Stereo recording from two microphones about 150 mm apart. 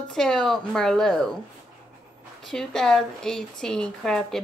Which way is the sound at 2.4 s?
5° left (ahead or behind).